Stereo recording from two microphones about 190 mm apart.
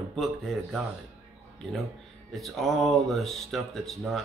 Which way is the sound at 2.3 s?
Centre (ahead or behind).